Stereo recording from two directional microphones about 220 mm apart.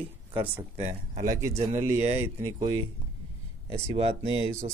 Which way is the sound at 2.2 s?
15° right (ahead or behind).